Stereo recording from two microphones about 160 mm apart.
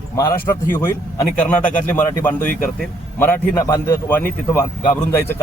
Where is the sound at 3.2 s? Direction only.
15° left (ahead or behind).